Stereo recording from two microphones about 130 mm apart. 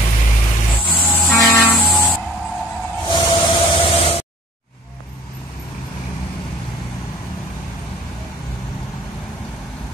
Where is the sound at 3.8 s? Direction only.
45° left (ahead or behind).